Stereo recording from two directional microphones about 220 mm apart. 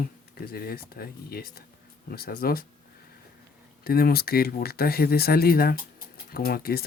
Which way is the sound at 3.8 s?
45° left (ahead or behind).